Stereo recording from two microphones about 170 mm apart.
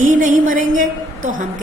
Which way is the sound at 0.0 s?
50° right (ahead or behind).